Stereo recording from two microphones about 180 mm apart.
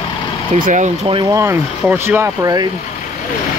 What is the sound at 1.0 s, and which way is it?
Speech, 30° right (ahead or behind).